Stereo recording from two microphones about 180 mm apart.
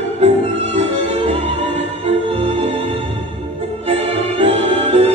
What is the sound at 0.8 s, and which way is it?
Music, 35° right (ahead or behind).